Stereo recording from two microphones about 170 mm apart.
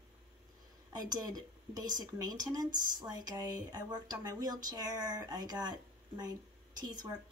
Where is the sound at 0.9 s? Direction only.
20° right (ahead or behind).